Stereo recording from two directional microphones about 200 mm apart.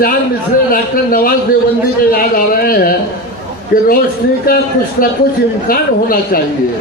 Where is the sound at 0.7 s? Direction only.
45° left (ahead or behind).